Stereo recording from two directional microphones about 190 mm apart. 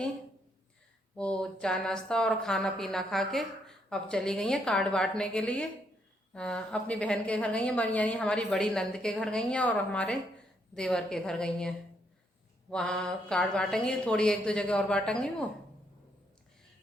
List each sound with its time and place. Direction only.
1.1 s a woman's voice: 5° left (ahead or behind)
12.7 s a woman's voice: 5° left (ahead or behind)